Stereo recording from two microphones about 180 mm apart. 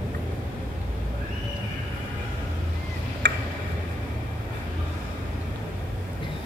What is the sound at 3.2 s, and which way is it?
Tick-tock, 70° right (ahead or behind).